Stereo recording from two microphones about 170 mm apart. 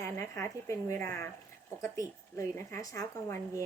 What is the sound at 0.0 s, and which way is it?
A woman's voice, 15° left (ahead or behind).